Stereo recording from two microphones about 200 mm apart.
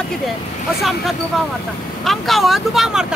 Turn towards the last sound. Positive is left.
turn(degrees=0)  # may be behind; listen again after turning